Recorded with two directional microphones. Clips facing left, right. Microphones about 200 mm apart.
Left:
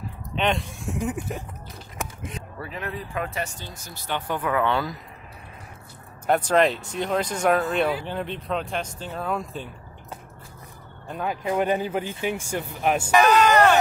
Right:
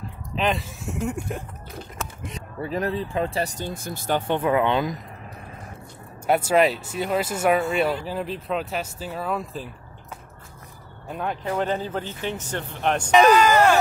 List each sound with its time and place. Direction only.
0.4 s speech: centre (ahead or behind)
2.0 s a sound: 15° left (ahead or behind)
2.7 s speech: 35° right (ahead or behind); by 4.2 s 50° right (ahead or behind)
4.3 s speech: 25° right (ahead or behind)
6.2 s speech: 10° right (ahead or behind)
11.1 s speech: centre (ahead or behind)
11.4 s speech: 10° left (ahead or behind)